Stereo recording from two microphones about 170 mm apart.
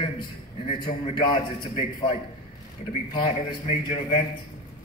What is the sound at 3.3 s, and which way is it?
Speech, 35° left (ahead or behind).